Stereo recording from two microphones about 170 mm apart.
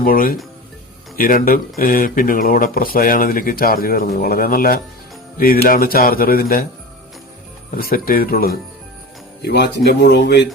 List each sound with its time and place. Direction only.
0.0 s speech: 55° left (ahead or behind)
7.8 s speech: 60° left (ahead or behind)
9.4 s speech: 80° left